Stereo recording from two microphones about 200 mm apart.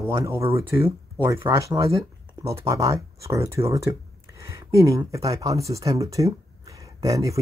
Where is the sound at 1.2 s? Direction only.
10° right (ahead or behind).